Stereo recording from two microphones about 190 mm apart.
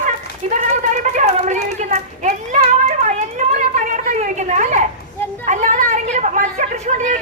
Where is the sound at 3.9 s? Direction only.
40° right (ahead or behind).